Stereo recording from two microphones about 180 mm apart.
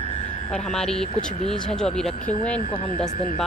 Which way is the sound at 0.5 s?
5° left (ahead or behind).